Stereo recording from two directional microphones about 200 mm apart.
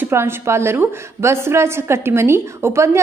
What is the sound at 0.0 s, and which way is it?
A woman's voice, 10° right (ahead or behind).